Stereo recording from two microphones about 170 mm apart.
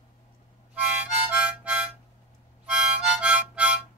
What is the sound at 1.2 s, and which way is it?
Harmonica, 10° right (ahead or behind).